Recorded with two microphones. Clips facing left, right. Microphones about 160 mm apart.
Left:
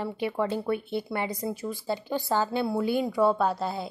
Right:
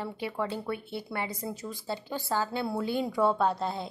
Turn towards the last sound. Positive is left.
turn(degrees=5)  # may be behind; listen again after turning